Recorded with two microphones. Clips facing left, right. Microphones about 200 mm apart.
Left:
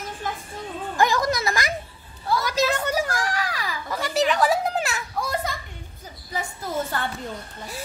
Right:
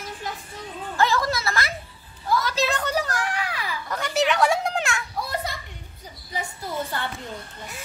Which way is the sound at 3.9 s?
Centre (ahead or behind).